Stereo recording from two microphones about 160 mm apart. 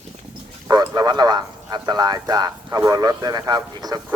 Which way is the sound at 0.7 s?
25° right (ahead or behind).